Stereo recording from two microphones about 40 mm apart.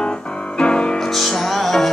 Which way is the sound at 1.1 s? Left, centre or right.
Centre.